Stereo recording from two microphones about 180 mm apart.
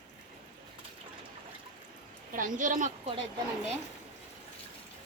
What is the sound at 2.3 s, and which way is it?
Speech, 45° right (ahead or behind).